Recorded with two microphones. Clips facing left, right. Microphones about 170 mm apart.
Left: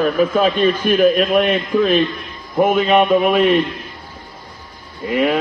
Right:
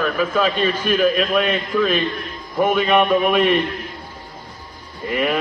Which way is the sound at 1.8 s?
35° left (ahead or behind).